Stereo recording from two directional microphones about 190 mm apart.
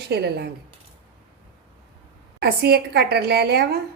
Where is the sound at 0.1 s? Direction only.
60° right (ahead or behind).